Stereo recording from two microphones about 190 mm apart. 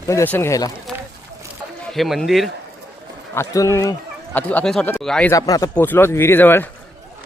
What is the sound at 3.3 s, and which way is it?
Speech, 15° left (ahead or behind).